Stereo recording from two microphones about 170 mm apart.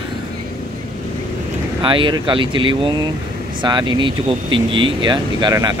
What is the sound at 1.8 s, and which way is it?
A man's voice, 30° right (ahead or behind).